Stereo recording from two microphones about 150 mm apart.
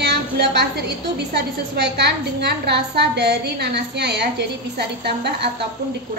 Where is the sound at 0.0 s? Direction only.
90° right.